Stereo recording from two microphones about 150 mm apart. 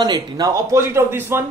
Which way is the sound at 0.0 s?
25° right (ahead or behind).